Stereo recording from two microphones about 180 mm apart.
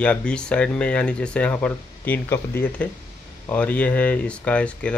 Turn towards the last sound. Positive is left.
turn(degrees=5)  # may be behind; listen again after turning